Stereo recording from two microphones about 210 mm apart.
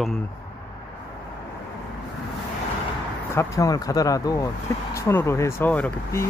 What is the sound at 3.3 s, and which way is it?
Speech, 15° left (ahead or behind).